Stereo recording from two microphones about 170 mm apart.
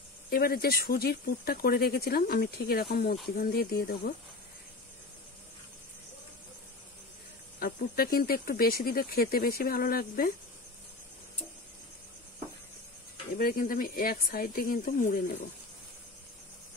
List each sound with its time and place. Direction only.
0.3 s speech: 65° left (ahead or behind)
7.5 s speech: 60° left (ahead or behind)
13.4 s speech: 55° left (ahead or behind)